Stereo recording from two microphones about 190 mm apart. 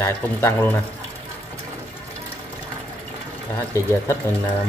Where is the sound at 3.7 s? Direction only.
15° left (ahead or behind).